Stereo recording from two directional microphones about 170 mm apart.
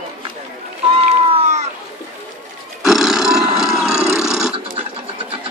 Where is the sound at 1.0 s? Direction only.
40° right (ahead or behind).